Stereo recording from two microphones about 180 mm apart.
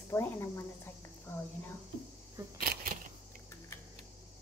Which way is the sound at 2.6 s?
55° right (ahead or behind).